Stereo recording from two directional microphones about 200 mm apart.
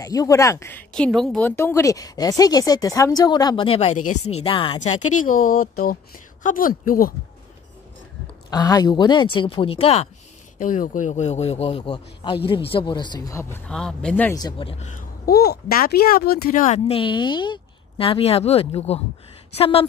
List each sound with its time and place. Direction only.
0.0 s a woman's voice: 15° left (ahead or behind)
5.0 s speech: 40° left (ahead or behind)
5.3 s speech: 90° left
6.4 s speech: 45° left (ahead or behind)
8.5 s speech: 20° left (ahead or behind)
10.6 s a woman's voice: 40° left (ahead or behind); by 14.3 s 5° left (ahead or behind)
14.3 s speech: 20° left (ahead or behind)